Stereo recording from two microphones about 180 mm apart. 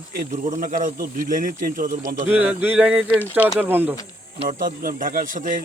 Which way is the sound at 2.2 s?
10° right (ahead or behind).